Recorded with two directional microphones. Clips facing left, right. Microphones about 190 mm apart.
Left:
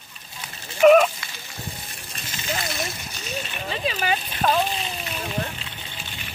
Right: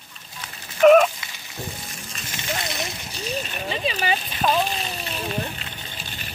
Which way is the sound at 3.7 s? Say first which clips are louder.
Even; 5° right (ahead or behind).